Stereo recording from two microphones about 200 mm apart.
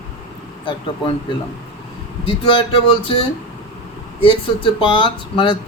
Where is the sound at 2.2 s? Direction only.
25° left (ahead or behind).